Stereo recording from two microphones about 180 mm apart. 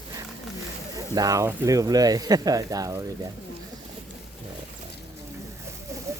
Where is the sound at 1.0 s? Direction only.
20° right (ahead or behind).